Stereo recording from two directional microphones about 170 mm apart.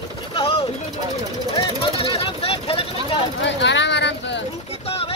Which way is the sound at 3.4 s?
90° left.